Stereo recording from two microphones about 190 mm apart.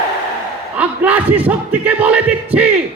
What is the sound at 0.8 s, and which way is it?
Speech, 10° right (ahead or behind).